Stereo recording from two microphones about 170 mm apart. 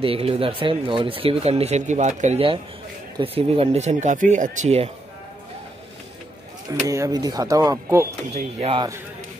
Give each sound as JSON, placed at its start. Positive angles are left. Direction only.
{"t": 0.0, "sound": "speech", "side_deg": -35}
{"t": 6.9, "sound": "speech", "side_deg": -20}
{"t": 8.3, "sound": "speech", "side_deg": -40}